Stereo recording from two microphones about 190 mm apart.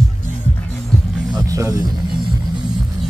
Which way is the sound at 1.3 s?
15° right (ahead or behind).